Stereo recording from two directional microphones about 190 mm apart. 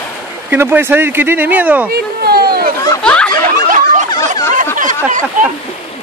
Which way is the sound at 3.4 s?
45° right (ahead or behind).